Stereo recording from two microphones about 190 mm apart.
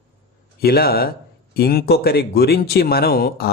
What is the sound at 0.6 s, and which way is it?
Speech, 55° left (ahead or behind).